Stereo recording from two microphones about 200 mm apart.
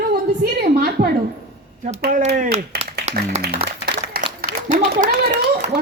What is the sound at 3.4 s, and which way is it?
Applause, 50° right (ahead or behind).